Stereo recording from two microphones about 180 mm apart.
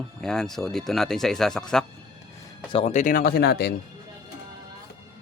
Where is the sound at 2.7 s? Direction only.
40° left (ahead or behind); by 3.7 s 65° left (ahead or behind).